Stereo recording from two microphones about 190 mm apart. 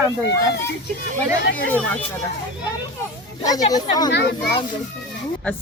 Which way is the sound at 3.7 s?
20° left (ahead or behind).